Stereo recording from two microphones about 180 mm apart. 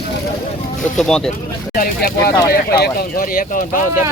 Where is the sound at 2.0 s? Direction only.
60° left (ahead or behind).